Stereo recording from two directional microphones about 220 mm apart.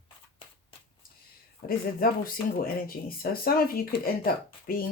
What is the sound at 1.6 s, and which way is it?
Speech, 40° left (ahead or behind).